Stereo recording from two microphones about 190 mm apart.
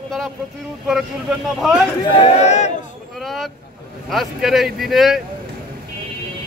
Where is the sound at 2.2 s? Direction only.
35° left (ahead or behind).